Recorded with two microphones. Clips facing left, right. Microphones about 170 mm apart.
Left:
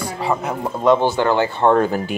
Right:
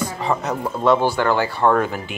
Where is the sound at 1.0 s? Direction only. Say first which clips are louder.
Left 2 dB; 20° left (ahead or behind).